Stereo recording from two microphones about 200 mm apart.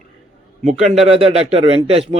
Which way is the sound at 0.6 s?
30° right (ahead or behind).